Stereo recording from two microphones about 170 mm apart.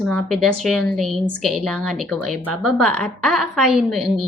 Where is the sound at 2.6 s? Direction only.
Centre (ahead or behind).